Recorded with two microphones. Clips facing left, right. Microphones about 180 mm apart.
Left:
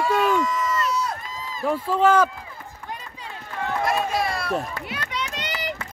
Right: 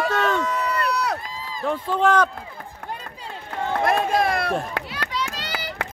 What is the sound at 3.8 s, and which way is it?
Speech, 55° right (ahead or behind).